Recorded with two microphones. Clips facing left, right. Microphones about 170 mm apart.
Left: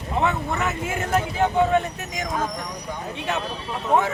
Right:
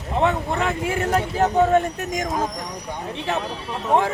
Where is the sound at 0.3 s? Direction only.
30° right (ahead or behind).